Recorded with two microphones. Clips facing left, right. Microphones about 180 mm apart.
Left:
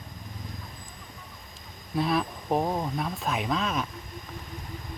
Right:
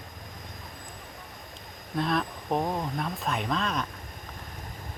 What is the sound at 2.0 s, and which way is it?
Speech, 5° left (ahead or behind).